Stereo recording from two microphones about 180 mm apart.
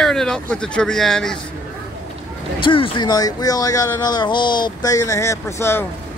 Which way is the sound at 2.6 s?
30° left (ahead or behind).